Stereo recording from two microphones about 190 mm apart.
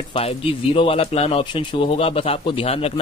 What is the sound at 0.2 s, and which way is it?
Speech, 30° left (ahead or behind).